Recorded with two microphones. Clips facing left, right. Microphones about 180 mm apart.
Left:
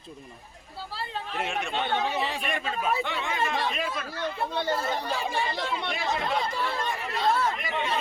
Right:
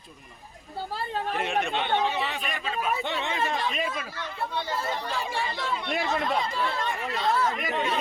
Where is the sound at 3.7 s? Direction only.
Centre (ahead or behind).